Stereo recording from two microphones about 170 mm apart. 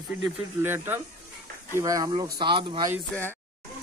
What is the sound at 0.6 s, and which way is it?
Speech, 15° right (ahead or behind).